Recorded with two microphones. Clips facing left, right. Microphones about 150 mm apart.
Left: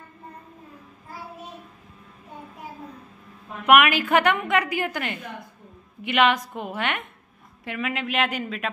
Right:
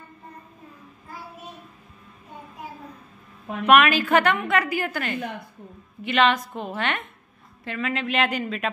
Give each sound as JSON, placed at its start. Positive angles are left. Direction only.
{"t": 3.6, "sound": "a woman's voice", "side_deg": 15}